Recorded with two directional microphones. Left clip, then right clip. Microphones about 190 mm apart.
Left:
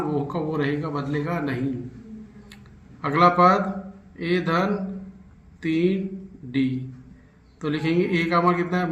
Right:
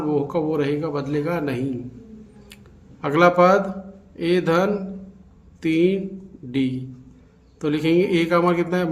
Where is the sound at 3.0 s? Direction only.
30° right (ahead or behind).